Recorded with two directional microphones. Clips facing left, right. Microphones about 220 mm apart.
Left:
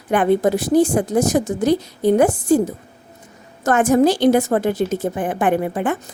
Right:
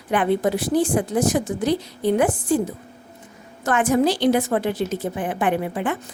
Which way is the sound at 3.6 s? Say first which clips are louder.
Left 4 dB; 45° left (ahead or behind).